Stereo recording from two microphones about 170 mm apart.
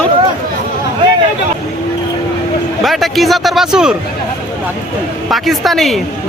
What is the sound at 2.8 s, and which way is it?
Speech, centre (ahead or behind).